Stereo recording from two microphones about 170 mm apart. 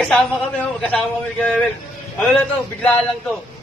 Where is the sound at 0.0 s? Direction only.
5° left (ahead or behind).